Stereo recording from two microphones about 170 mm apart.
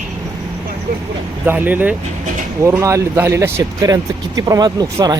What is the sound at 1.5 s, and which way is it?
Speech, 10° right (ahead or behind).